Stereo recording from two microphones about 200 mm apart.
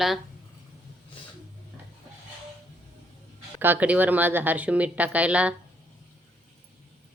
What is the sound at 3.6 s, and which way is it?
Speech, 10° right (ahead or behind).